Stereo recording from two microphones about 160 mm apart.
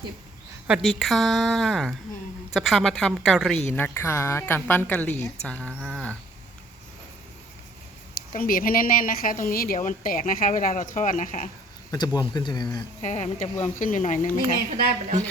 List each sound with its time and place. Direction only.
0.7 s speech: centre (ahead or behind)
3.7 s a woman's voice: 15° left (ahead or behind)
8.3 s a woman's voice: 60° left (ahead or behind)
11.9 s speech: 25° left (ahead or behind)
13.0 s speech: 50° left (ahead or behind)
14.7 s a woman's voice: 50° right (ahead or behind)